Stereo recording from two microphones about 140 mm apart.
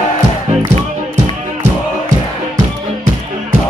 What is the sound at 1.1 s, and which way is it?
Music, 55° right (ahead or behind).